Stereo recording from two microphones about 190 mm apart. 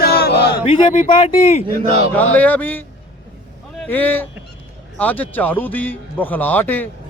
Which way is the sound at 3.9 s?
10° left (ahead or behind).